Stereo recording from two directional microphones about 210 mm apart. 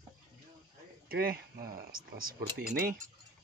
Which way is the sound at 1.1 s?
45° right (ahead or behind).